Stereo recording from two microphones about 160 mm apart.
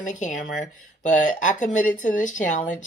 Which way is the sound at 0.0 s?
50° left (ahead or behind).